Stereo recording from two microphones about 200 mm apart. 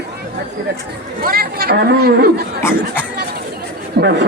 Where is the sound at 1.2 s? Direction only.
50° right (ahead or behind).